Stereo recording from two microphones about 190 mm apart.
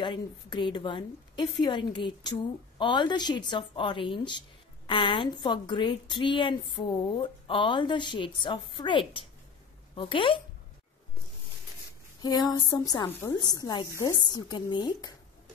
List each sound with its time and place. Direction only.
0.0 s a woman's voice: 25° left (ahead or behind)
12.2 s a woman's voice: 20° left (ahead or behind)